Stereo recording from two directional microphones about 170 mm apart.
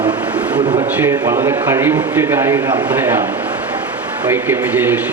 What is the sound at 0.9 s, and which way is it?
Speech, 15° right (ahead or behind).